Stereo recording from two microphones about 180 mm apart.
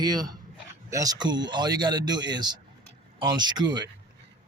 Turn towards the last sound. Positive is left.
turn(degrees=-25)  # may be behind; listen again after turning